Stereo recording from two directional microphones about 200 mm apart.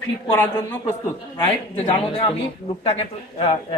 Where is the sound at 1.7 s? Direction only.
25° left (ahead or behind).